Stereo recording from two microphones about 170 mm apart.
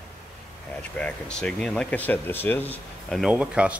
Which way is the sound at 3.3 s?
5° right (ahead or behind).